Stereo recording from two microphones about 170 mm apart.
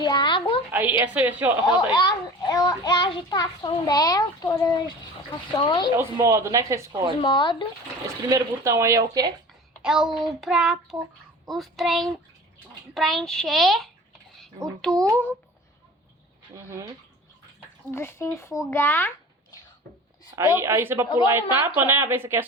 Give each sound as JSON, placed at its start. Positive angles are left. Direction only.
{"t": 0.0, "sound": "a sound", "side_deg": 25}
{"t": 0.7, "sound": "speech", "side_deg": -10}
{"t": 1.6, "sound": "a child's voice", "side_deg": 25}
{"t": 5.9, "sound": "speech", "side_deg": -15}
{"t": 7.2, "sound": "a child's voice", "side_deg": 30}
{"t": 8.0, "sound": "speech", "side_deg": -20}
{"t": 9.8, "sound": "a child's voice", "side_deg": -5}
{"t": 14.9, "sound": "speech", "side_deg": -20}
{"t": 16.6, "sound": "speech", "side_deg": -20}
{"t": 17.9, "sound": "speech", "side_deg": 15}
{"t": 20.6, "sound": "speech", "side_deg": -15}